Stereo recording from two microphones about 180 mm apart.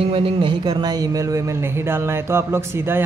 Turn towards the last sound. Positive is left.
turn(degrees=-15)  # may be behind; listen again after turning